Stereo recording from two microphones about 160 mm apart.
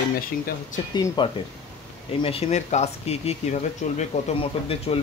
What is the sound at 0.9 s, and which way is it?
Speech, 25° left (ahead or behind).